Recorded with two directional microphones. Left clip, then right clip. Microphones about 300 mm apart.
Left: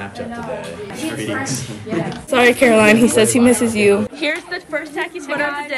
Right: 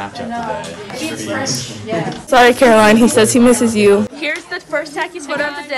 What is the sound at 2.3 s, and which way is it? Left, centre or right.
A woman's voice, centre.